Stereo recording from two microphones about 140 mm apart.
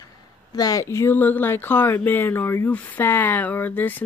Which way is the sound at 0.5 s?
25° left (ahead or behind).